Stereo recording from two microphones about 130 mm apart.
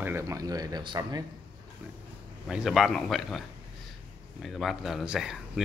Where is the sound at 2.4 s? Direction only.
5° right (ahead or behind).